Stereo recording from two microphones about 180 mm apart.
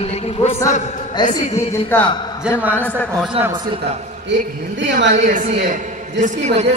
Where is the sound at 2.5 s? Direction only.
5° right (ahead or behind).